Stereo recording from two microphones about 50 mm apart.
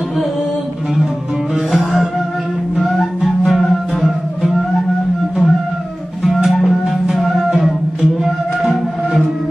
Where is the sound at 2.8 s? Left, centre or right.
Centre.